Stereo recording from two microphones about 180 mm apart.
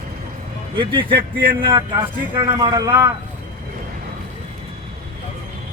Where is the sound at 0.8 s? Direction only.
30° right (ahead or behind).